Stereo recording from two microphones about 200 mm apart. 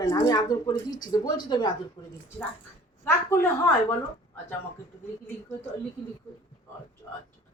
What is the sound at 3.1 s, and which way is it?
Speech, 10° left (ahead or behind).